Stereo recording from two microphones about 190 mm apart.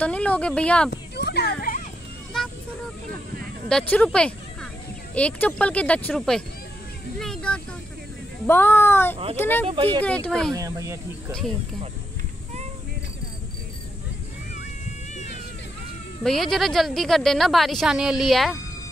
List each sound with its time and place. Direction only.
0.0 s speech: 5° left (ahead or behind)
1.1 s a sound: 60° left (ahead or behind)
2.3 s vehicle: 5° left (ahead or behind)
3.9 s speech: 5° left (ahead or behind)
7.2 s vehicle: 5° left (ahead or behind)
8.5 s speech: 10° left (ahead or behind)
10.5 s speech: 15° right (ahead or behind)
16.2 s speech: centre (ahead or behind)